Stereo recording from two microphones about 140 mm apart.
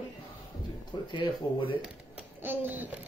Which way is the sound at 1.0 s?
35° left (ahead or behind).